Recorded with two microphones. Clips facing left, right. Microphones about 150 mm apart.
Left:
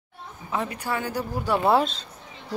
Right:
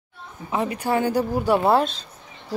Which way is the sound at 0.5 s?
15° right (ahead or behind).